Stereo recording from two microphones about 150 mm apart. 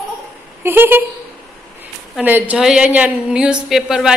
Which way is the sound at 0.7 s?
15° right (ahead or behind).